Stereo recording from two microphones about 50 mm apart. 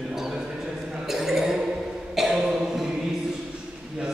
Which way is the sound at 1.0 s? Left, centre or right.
Centre.